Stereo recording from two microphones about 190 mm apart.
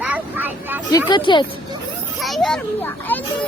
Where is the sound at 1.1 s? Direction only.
25° left (ahead or behind).